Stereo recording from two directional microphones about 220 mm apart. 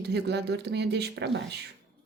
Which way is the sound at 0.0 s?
50° right (ahead or behind).